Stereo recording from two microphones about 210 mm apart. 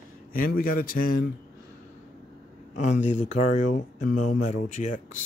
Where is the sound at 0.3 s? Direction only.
45° left (ahead or behind).